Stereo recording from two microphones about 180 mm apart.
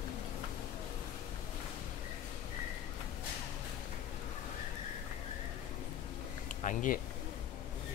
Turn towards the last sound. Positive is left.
turn(degrees=45)  # may be behind; listen again after turning